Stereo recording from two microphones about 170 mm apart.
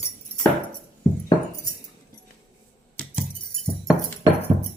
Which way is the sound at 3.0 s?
5° left (ahead or behind).